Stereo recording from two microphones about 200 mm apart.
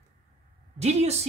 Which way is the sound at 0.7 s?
35° right (ahead or behind).